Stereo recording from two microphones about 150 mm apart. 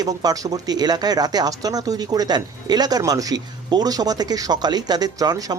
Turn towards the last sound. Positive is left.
turn(degrees=-25)  # may be behind; listen again after turning